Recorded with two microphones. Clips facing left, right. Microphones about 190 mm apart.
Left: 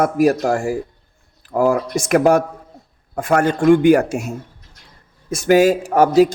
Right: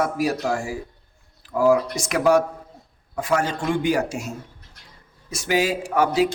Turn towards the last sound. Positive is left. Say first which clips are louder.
# left 7 dB
turn(degrees=45)  # may be behind; listen again after turning